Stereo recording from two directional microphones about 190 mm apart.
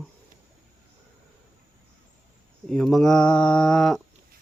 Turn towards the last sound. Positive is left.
turn(degrees=0)  # may be behind; listen again after turning